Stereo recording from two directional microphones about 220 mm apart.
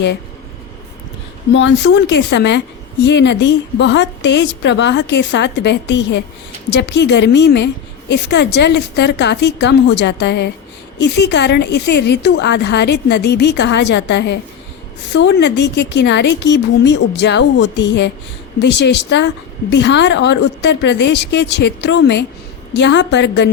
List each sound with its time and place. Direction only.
1.5 s a woman's voice: 55° left (ahead or behind)